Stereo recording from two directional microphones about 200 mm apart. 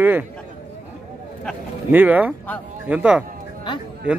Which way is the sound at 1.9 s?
10° right (ahead or behind).